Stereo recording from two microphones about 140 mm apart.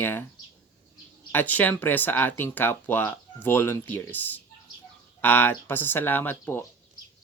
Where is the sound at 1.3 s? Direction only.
15° left (ahead or behind).